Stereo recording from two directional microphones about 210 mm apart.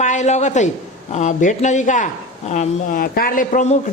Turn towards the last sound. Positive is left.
turn(degrees=35)  # may be behind; listen again after turning